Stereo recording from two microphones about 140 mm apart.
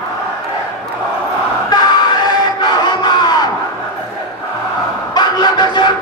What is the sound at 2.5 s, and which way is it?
Crowd, 30° left (ahead or behind).